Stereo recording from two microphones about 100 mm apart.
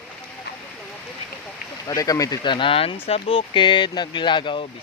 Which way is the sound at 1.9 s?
35° left (ahead or behind).